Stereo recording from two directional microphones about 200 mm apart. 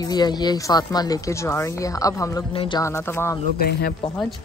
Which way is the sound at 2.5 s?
25° left (ahead or behind).